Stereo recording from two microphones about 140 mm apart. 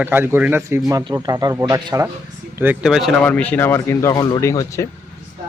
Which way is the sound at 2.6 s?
10° right (ahead or behind).